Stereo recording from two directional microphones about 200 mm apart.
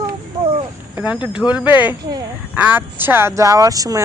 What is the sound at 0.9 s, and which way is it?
Speech, 5° right (ahead or behind).